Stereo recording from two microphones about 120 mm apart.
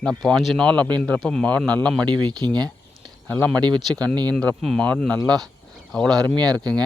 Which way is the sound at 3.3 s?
10° left (ahead or behind).